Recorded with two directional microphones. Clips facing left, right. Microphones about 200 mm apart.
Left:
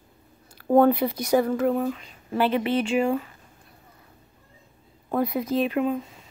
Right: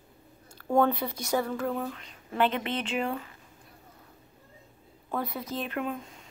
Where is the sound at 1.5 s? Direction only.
20° left (ahead or behind).